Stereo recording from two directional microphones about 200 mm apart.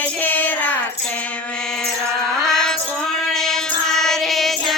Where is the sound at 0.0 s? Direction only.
10° left (ahead or behind).